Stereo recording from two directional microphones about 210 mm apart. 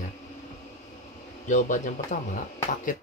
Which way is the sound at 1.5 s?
35° left (ahead or behind).